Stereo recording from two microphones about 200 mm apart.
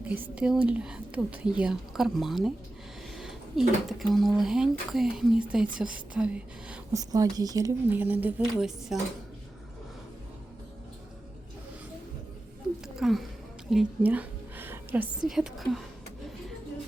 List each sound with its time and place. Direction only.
0.0 s speech: 10° right (ahead or behind)
3.2 s a sound: centre (ahead or behind)
3.8 s speech: centre (ahead or behind)
6.9 s speech: 15° right (ahead or behind)
13.0 s a woman's voice: centre (ahead or behind)